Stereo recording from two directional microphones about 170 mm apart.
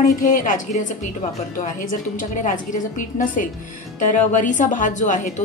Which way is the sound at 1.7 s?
50° left (ahead or behind).